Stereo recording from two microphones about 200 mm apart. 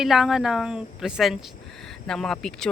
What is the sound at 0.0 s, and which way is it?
Speech, centre (ahead or behind).